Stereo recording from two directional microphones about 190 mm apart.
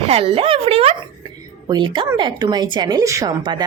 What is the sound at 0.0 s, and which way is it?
A woman's voice, 30° right (ahead or behind).